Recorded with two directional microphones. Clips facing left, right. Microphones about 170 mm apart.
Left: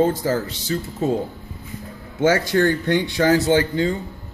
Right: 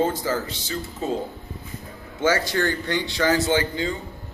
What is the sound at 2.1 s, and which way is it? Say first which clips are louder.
Speech: left 4 dB; 55° left (ahead or behind).